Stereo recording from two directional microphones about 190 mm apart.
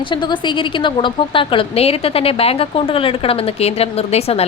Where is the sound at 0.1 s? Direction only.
25° left (ahead or behind).